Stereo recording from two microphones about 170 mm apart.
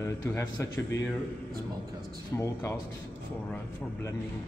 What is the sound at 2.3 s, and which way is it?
Speech, 15° left (ahead or behind).